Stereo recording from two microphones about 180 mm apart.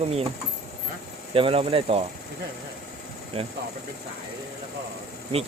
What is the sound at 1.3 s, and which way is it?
Speech, 30° right (ahead or behind).